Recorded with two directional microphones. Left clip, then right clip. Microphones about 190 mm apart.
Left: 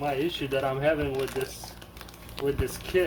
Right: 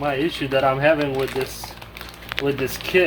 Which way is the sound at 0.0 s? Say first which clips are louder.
Right 6 dB; 20° right (ahead or behind).